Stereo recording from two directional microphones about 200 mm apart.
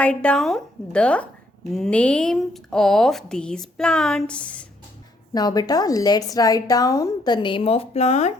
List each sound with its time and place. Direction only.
0.0 s speech: 5° left (ahead or behind)
5.3 s a woman's voice: 20° left (ahead or behind)